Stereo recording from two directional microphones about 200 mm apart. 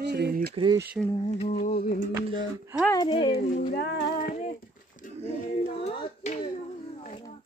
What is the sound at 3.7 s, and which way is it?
Child singing, 55° left (ahead or behind).